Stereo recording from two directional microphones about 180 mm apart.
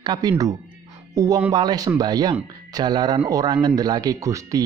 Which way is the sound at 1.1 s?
20° right (ahead or behind).